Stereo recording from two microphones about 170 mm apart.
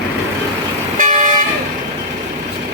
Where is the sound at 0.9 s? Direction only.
50° right (ahead or behind).